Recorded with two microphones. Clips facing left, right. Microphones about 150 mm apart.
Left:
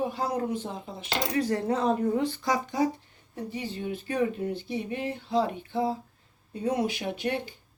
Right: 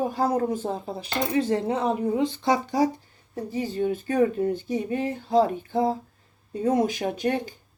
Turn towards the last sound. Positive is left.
turn(degrees=-45)  # may be behind; listen again after turning